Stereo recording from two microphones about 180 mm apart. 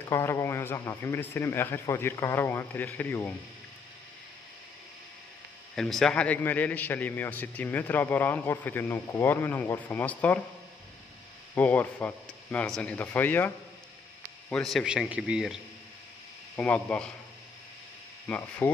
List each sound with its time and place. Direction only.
0.1 s a man's voice: 15° left (ahead or behind)
5.8 s a man's voice: centre (ahead or behind)
11.5 s a man's voice: 10° left (ahead or behind)
14.5 s a man's voice: 5° left (ahead or behind)
16.5 s a man's voice: 10° left (ahead or behind)
18.6 s a man's voice: 10° left (ahead or behind)